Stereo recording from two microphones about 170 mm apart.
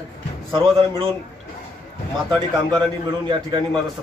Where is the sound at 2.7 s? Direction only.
25° right (ahead or behind).